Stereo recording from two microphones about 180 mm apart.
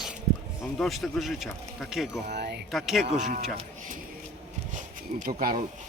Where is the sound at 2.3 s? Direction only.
65° right (ahead or behind).